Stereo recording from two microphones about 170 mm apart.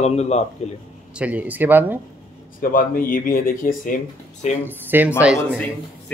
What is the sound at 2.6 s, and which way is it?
Speech, 55° left (ahead or behind).